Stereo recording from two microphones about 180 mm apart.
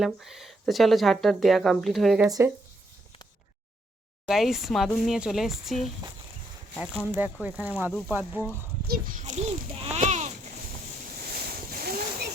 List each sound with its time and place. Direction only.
0.0 s speech: centre (ahead or behind)
4.3 s speech: centre (ahead or behind)
8.9 s speech: 50° right (ahead or behind)
9.8 s a sound: 40° right (ahead or behind)
11.3 s boat: 60° right (ahead or behind)